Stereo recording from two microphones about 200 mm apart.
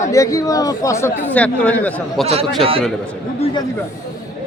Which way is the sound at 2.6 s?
30° right (ahead or behind).